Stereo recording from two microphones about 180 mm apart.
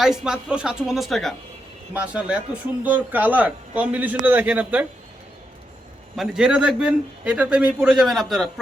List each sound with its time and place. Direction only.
0.0 s a man's voice: 5° right (ahead or behind)
6.1 s a man's voice: 5° right (ahead or behind)